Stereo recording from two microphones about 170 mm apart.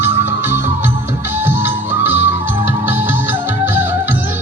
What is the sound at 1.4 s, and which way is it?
Music, 10° right (ahead or behind).